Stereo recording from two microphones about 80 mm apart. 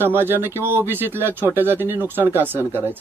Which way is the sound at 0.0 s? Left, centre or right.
Right.